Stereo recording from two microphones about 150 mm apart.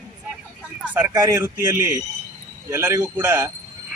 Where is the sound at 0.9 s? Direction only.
15° right (ahead or behind).